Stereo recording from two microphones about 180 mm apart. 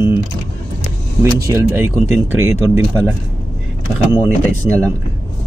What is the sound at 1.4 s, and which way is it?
Speech, 15° right (ahead or behind).